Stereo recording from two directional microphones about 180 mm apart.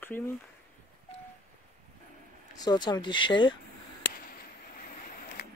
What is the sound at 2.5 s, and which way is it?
Speech, 20° left (ahead or behind).